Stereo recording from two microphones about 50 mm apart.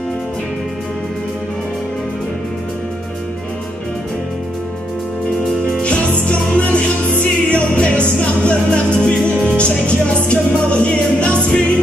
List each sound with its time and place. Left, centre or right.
6.2 s music: left